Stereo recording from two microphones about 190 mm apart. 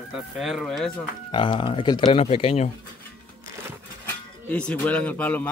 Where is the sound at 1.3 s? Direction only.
25° left (ahead or behind).